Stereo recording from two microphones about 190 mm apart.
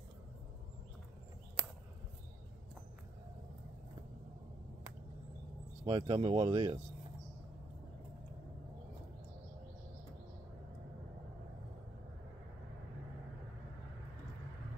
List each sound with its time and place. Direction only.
5.9 s speech: 25° right (ahead or behind)